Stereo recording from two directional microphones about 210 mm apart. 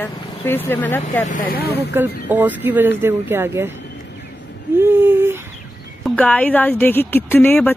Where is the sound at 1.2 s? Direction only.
40° left (ahead or behind).